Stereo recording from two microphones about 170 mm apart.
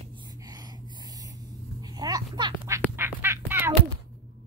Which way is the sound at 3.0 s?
15° right (ahead or behind).